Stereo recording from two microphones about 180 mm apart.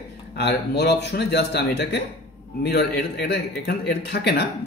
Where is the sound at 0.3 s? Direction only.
70° left (ahead or behind).